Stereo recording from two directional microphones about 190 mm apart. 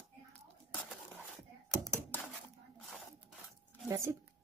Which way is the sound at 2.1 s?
10° left (ahead or behind).